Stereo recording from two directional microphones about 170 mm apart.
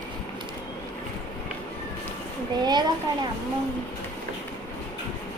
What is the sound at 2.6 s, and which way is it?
Speech, 25° right (ahead or behind).